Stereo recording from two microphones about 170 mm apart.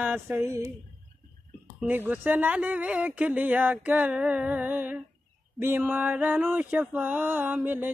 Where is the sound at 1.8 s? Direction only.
10° right (ahead or behind).